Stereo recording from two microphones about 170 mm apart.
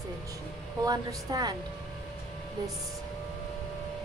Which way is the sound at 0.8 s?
20° right (ahead or behind).